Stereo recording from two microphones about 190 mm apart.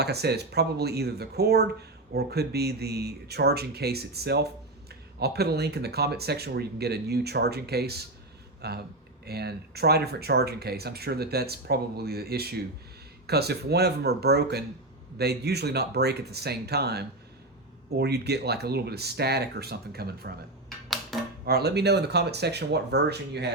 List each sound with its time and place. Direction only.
0.0 s speech: 60° right (ahead or behind)
20.7 s dishes: centre (ahead or behind)
21.4 s speech: 55° right (ahead or behind)